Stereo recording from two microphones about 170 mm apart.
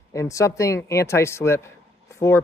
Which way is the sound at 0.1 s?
20° left (ahead or behind).